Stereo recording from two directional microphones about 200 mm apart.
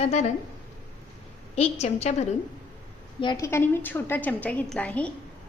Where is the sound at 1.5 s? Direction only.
30° left (ahead or behind).